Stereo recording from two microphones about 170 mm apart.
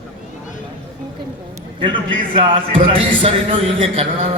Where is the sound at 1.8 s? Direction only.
30° right (ahead or behind).